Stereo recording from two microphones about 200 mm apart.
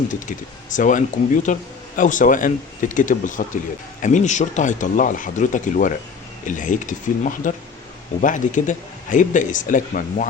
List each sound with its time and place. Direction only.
0.8 s speech: 40° left (ahead or behind)